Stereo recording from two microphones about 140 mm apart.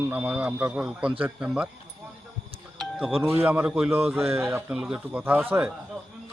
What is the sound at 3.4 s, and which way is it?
A man's voice, 5° right (ahead or behind).